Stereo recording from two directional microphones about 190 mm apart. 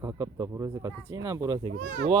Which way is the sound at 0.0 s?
15° right (ahead or behind).